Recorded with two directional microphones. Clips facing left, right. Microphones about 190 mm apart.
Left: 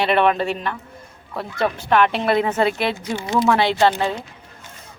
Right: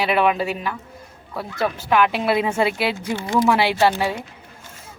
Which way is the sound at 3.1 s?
15° left (ahead or behind).